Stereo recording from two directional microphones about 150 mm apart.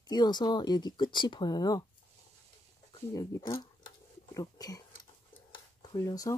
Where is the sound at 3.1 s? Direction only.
20° left (ahead or behind).